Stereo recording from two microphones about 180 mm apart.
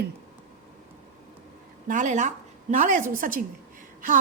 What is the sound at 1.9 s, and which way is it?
A woman's voice, 45° right (ahead or behind).